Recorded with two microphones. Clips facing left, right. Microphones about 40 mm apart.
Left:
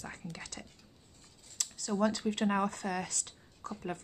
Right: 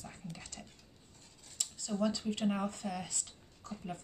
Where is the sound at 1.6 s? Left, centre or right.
Left.